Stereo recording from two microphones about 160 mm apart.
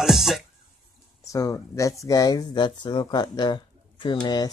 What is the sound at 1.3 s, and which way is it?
Speech, 20° left (ahead or behind).